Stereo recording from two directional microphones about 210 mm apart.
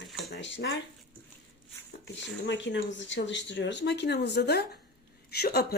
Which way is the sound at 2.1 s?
60° left (ahead or behind).